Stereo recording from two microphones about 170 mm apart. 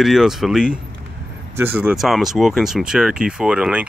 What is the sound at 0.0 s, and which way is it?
Speech, centre (ahead or behind).